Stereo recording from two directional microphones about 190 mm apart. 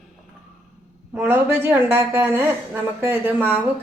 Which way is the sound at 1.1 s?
10° right (ahead or behind).